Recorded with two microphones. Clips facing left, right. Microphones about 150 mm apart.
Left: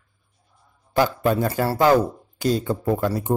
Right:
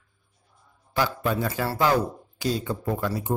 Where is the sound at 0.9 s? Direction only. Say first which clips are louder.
Left 6 dB; 50° left (ahead or behind).